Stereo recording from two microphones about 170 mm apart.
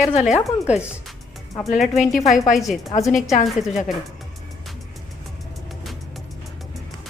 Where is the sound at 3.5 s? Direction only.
Centre (ahead or behind).